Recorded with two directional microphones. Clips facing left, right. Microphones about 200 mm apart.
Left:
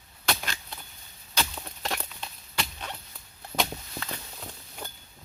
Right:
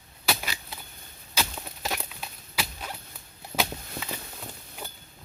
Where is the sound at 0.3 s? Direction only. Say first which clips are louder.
Right 1 dB; 5° right (ahead or behind).